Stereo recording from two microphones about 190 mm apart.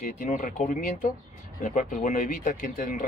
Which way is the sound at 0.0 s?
40° left (ahead or behind).